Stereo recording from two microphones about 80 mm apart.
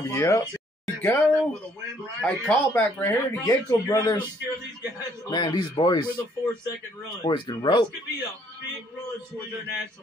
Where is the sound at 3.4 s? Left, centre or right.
Left.